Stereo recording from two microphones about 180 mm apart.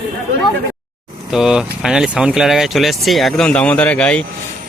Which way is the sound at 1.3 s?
5° right (ahead or behind).